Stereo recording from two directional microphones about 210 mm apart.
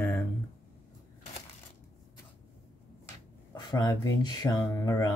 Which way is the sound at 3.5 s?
20° left (ahead or behind).